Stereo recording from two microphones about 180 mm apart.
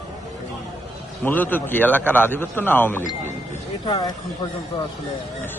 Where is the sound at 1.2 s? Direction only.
10° left (ahead or behind).